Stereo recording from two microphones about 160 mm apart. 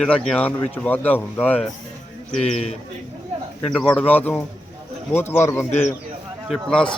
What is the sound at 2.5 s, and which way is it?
Speech, 45° left (ahead or behind).